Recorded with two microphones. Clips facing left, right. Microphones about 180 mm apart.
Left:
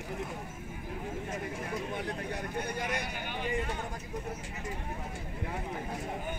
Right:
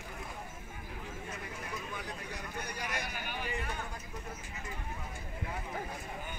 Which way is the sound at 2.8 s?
20° left (ahead or behind).